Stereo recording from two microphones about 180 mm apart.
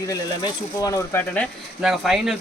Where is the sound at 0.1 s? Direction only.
20° left (ahead or behind).